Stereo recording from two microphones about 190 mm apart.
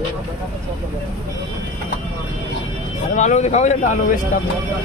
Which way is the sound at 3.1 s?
40° left (ahead or behind).